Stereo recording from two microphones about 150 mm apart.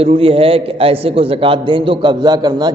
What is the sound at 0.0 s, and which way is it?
A man's voice, 40° right (ahead or behind).